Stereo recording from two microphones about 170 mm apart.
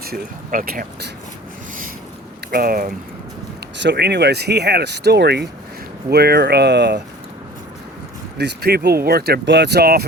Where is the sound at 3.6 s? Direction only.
85° right.